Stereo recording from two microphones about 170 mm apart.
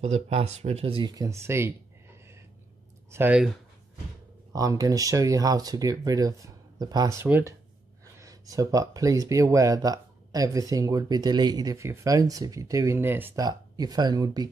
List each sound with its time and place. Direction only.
0.0 s speech: 40° right (ahead or behind); by 3.5 s 5° right (ahead or behind)
4.5 s speech: 20° right (ahead or behind)
13.5 s speech: 25° right (ahead or behind)